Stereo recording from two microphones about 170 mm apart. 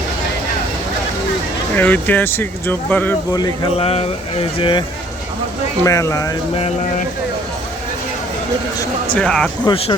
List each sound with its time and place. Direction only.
1.7 s speech: 10° left (ahead or behind)
3.3 s speech: 20° left (ahead or behind)
3.8 s speech: 35° left (ahead or behind)
5.8 s speech: 20° left (ahead or behind)
9.1 s speech: 5° left (ahead or behind)
9.6 s speech: 35° left (ahead or behind)